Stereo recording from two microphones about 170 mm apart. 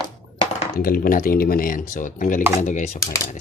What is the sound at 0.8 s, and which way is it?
Speech, 60° left (ahead or behind).